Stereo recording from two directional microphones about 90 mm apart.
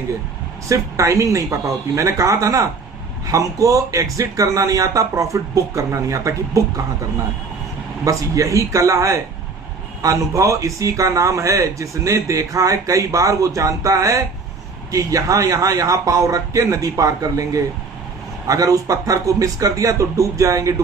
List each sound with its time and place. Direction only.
0.7 s speech: 35° right (ahead or behind)
8.0 s speech: 35° right (ahead or behind)